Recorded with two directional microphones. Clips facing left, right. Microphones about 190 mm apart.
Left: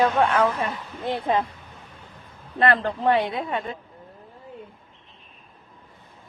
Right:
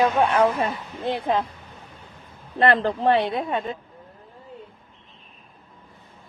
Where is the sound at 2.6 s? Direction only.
30° right (ahead or behind).